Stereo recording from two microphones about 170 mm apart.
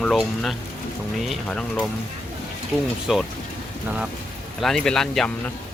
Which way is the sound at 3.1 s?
Centre (ahead or behind).